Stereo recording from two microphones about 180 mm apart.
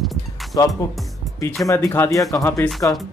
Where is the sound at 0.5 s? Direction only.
20° left (ahead or behind).